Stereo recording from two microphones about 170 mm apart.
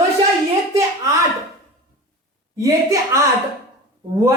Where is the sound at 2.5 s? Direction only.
20° right (ahead or behind).